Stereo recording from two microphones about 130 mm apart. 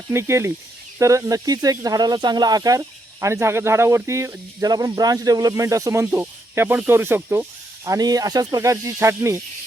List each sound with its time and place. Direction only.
0.1 s speech: 20° right (ahead or behind)
7.9 s speech: 30° right (ahead or behind)